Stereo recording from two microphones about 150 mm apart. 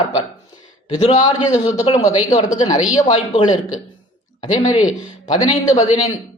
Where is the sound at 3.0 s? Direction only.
35° left (ahead or behind).